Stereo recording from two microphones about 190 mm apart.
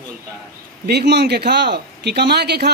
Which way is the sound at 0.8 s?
60° right (ahead or behind).